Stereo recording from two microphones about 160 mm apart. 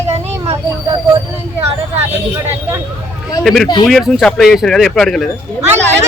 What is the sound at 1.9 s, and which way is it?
Speech, 15° right (ahead or behind).